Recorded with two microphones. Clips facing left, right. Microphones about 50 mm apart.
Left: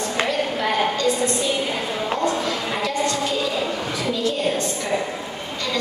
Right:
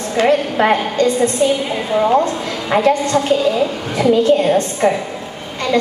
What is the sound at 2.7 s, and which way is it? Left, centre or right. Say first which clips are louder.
A woman's voice: right 13 dB; right.